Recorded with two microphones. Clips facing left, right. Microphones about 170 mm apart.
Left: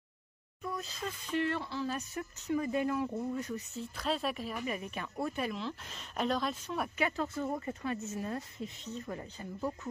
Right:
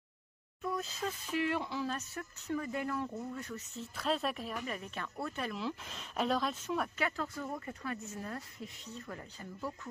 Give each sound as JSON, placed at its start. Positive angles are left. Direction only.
{"t": 0.6, "sound": "speech", "side_deg": 0}
{"t": 1.9, "sound": "speech", "side_deg": 15}
{"t": 3.7, "sound": "speech", "side_deg": 0}
{"t": 4.6, "sound": "speech", "side_deg": 15}
{"t": 5.5, "sound": "speech", "side_deg": -5}
{"t": 6.8, "sound": "speech", "side_deg": 15}